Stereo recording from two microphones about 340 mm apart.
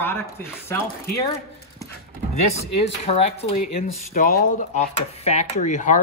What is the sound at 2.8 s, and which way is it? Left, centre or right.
A man's voice, centre.